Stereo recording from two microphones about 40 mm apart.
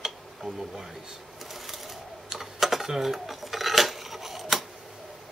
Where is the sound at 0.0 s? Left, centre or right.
Centre.